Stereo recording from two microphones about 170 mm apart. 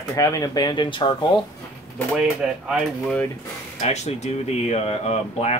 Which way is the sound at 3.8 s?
40° left (ahead or behind).